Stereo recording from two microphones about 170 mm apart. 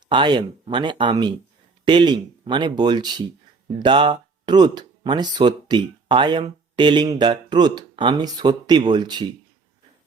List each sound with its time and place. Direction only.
0.1 s speech: 25° right (ahead or behind)